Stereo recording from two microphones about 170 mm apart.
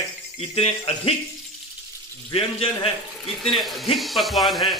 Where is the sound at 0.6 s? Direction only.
35° left (ahead or behind).